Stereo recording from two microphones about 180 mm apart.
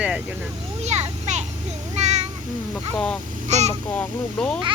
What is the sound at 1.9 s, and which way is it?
Child singing, 40° right (ahead or behind).